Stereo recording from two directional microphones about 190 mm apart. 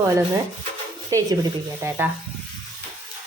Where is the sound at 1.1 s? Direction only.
20° right (ahead or behind).